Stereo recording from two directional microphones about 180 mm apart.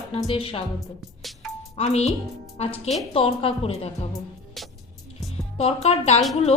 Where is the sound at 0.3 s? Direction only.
30° left (ahead or behind).